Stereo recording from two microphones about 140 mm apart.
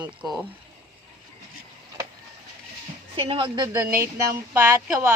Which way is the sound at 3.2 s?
40° right (ahead or behind).